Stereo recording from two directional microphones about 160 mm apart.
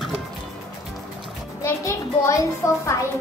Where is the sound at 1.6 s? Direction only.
20° left (ahead or behind).